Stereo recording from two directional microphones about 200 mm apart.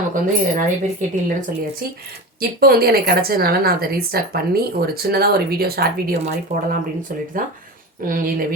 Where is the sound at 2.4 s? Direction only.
50° right (ahead or behind).